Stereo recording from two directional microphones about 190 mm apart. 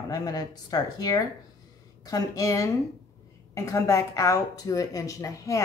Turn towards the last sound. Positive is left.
turn(degrees=15)  # may be behind; listen again after turning